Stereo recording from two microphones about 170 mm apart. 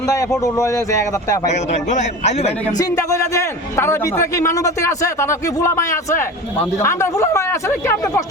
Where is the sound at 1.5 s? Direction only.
45° left (ahead or behind).